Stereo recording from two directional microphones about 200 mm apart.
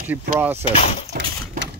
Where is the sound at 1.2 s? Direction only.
60° right (ahead or behind).